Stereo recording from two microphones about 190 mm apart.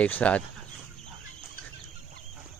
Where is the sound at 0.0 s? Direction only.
5° left (ahead or behind).